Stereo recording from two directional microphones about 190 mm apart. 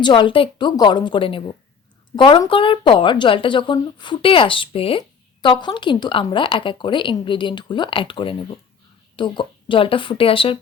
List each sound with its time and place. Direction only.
0.0 s speech: 25° left (ahead or behind)